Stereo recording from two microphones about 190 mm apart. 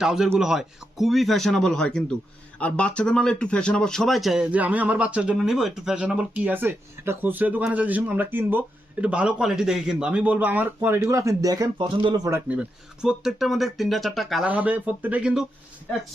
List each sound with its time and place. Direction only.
0.0 s speech: 5° right (ahead or behind); by 12.4 s 20° right (ahead or behind)
12.5 s speech: 5° right (ahead or behind)